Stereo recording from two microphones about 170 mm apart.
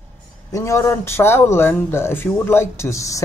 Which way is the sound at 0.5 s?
15° left (ahead or behind).